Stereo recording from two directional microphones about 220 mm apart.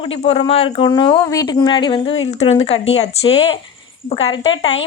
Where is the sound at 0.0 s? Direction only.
25° left (ahead or behind).